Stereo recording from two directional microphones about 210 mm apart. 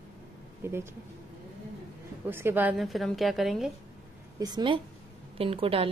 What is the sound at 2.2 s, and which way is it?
A woman's voice, 10° right (ahead or behind).